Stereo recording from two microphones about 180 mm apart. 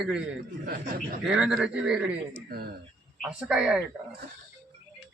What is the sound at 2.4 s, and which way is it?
Speech, 60° right (ahead or behind).